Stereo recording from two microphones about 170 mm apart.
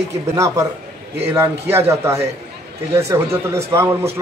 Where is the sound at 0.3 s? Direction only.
20° right (ahead or behind).